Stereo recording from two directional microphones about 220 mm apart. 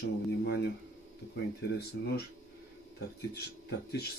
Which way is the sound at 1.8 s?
45° left (ahead or behind).